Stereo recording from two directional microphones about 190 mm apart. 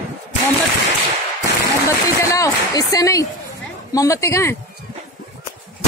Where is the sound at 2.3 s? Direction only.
20° left (ahead or behind).